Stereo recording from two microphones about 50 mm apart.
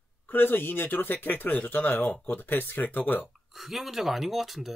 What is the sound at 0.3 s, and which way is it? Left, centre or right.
Speech, left.